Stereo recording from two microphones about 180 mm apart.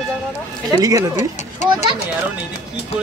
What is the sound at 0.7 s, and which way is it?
Speech, 20° right (ahead or behind).